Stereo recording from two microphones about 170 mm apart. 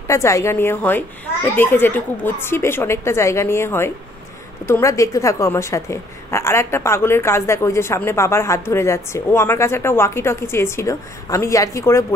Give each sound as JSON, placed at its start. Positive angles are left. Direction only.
{"t": 0.1, "sound": "a woman's voice", "side_deg": 15}